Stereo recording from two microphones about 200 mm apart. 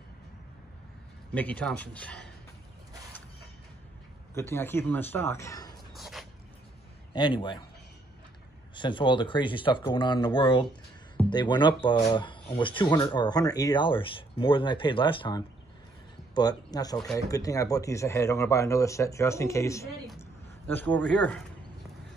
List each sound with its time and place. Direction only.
1.3 s speech: 10° left (ahead or behind)
4.3 s speech: 10° left (ahead or behind)
5.9 s a sound: centre (ahead or behind)
7.2 s speech: 20° left (ahead or behind)
8.7 s speech: 25° left (ahead or behind); by 21.4 s 5° left (ahead or behind)